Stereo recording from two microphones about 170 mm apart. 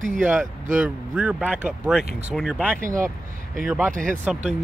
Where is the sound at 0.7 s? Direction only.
5° right (ahead or behind).